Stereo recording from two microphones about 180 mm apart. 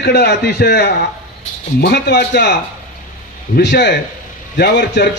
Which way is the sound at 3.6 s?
75° left (ahead or behind).